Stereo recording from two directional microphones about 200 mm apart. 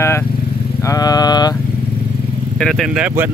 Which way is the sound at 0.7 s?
15° left (ahead or behind).